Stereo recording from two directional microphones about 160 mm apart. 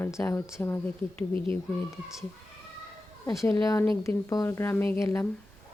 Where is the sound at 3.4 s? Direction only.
20° left (ahead or behind).